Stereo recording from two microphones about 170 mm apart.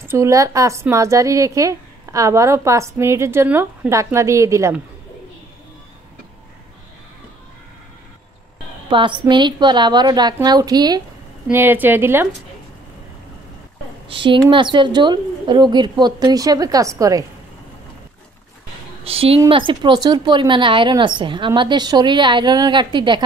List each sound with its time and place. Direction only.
0.0 s a woman's voice: 15° right (ahead or behind)
8.8 s a woman's voice: 30° right (ahead or behind)
11.5 s a woman's voice: 10° right (ahead or behind)
14.0 s a woman's voice: 30° right (ahead or behind)
19.0 s a woman's voice: 35° right (ahead or behind)